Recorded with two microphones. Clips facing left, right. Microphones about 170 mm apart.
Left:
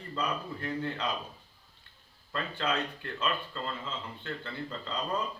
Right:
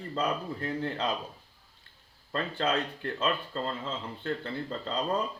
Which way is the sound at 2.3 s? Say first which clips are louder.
Right 3 dB; 30° right (ahead or behind).